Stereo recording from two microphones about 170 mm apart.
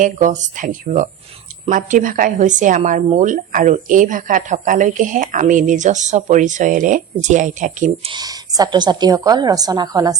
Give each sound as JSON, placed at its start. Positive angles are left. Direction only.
{"t": 0.0, "sound": "speech", "side_deg": -50}
{"t": 8.0, "sound": "a woman's voice", "side_deg": -25}